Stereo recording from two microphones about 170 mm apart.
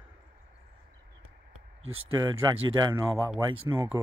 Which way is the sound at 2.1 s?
20° right (ahead or behind).